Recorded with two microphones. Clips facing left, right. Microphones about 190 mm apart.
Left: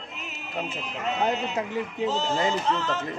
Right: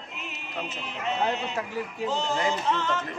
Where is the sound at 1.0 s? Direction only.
Centre (ahead or behind).